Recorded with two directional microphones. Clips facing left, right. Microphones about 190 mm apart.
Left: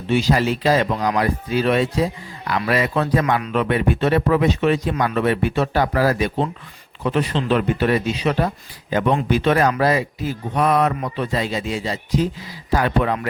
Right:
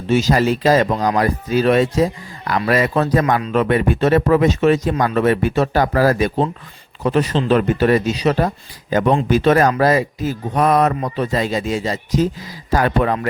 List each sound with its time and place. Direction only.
0.1 s speech: 40° right (ahead or behind)